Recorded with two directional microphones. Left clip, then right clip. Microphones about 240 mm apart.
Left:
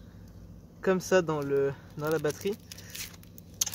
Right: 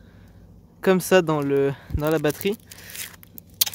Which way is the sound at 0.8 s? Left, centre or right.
Right.